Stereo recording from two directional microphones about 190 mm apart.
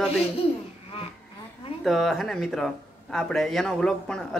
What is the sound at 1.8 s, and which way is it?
Speech, centre (ahead or behind).